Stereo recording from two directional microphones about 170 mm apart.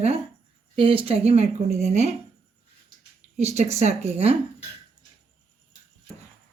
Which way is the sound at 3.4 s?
40° right (ahead or behind).